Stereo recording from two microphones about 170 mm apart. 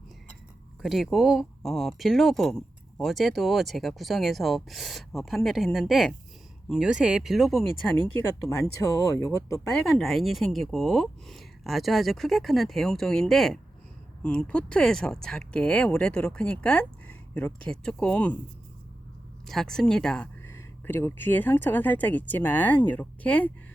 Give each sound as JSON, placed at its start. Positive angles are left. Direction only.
{"t": 0.8, "sound": "speech", "side_deg": 0}
{"t": 8.8, "sound": "speech", "side_deg": 20}
{"t": 9.7, "sound": "speech", "side_deg": 0}
{"t": 19.5, "sound": "speech", "side_deg": 0}